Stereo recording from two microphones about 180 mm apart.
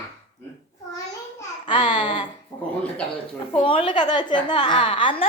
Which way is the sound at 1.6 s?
25° left (ahead or behind).